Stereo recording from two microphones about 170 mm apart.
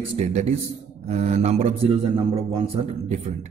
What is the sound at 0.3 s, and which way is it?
A man's voice, 40° right (ahead or behind).